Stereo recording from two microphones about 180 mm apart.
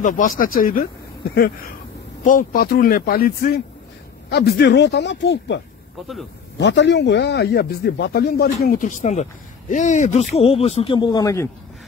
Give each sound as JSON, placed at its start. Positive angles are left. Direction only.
{"t": 0.0, "sound": "speech", "side_deg": 50}
{"t": 1.3, "sound": "a sound", "side_deg": 60}
{"t": 2.2, "sound": "speech", "side_deg": 50}
{"t": 6.6, "sound": "speech", "side_deg": 80}